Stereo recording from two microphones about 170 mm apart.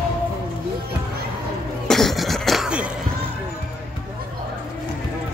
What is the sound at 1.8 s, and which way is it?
Cough, centre (ahead or behind).